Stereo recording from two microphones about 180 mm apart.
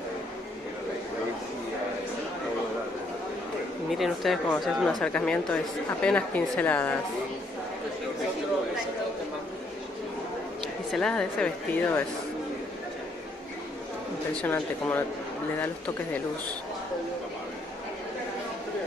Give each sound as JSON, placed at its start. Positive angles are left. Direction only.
{"t": 3.9, "sound": "speech", "side_deg": 0}
{"t": 10.9, "sound": "speech", "side_deg": 5}
{"t": 14.4, "sound": "speech", "side_deg": 10}